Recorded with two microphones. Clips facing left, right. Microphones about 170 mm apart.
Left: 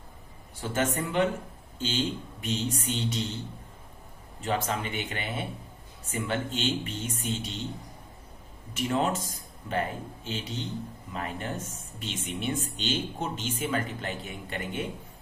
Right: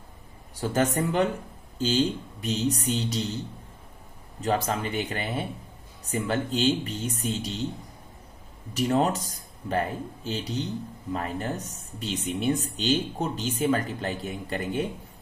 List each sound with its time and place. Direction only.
0.6 s speech: 40° right (ahead or behind)
4.4 s speech: 40° right (ahead or behind)
8.7 s speech: 40° right (ahead or behind)